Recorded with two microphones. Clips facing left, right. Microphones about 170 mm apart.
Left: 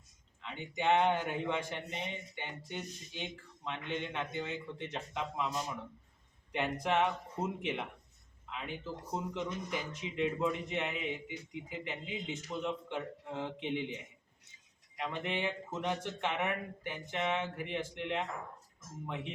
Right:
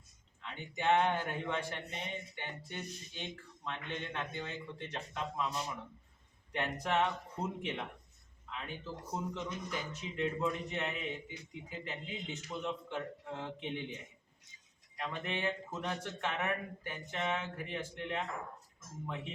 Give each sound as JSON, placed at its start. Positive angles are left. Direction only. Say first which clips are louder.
{"t": 0.8, "sound": "a man's voice", "louder": "left 1 dB", "side_deg": 15}
{"t": 6.5, "sound": "a man's voice", "louder": "left 2 dB", "side_deg": 15}